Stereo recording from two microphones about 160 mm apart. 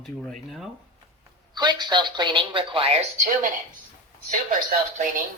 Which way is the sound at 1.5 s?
30° right (ahead or behind).